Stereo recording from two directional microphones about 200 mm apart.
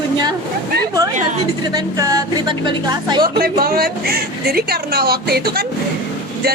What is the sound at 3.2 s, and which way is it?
Speech, 50° right (ahead or behind).